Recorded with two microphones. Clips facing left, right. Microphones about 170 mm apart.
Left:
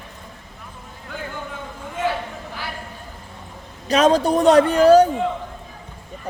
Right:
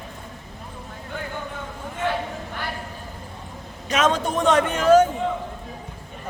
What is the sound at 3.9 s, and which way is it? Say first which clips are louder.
A man's voice: left 6 dB; 35° left (ahead or behind).